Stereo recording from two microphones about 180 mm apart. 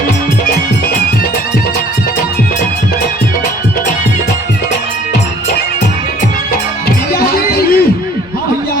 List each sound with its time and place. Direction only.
6.8 s music: 60° left (ahead or behind)